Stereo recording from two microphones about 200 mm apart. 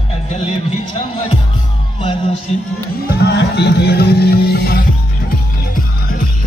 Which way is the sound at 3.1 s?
55° left (ahead or behind).